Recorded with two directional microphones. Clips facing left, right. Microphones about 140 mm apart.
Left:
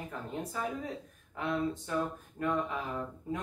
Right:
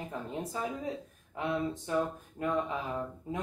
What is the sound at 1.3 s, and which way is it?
Speech, 20° right (ahead or behind).